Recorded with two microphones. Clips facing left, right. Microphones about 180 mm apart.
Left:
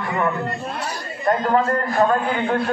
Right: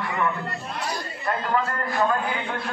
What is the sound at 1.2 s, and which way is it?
Speech, 40° left (ahead or behind).